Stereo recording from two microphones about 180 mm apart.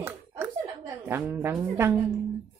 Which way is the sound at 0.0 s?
10° right (ahead or behind).